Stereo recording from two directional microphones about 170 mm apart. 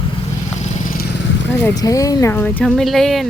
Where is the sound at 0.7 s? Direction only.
55° left (ahead or behind).